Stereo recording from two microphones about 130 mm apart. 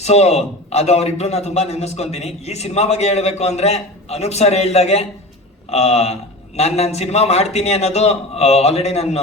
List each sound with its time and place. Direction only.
0.0 s a man's voice: 55° left (ahead or behind)